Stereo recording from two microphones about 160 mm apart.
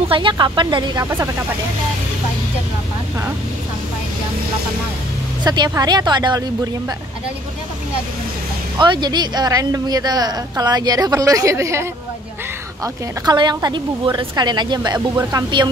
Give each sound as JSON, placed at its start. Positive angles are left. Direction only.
{"t": 0.1, "sound": "a woman's voice", "side_deg": -30}
{"t": 5.4, "sound": "a woman's voice", "side_deg": -25}
{"t": 8.7, "sound": "a woman's voice", "side_deg": -30}
{"t": 15.0, "sound": "speech", "side_deg": -15}